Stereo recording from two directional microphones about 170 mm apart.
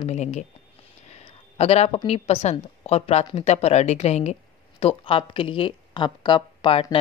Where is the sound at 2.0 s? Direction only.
40° left (ahead or behind).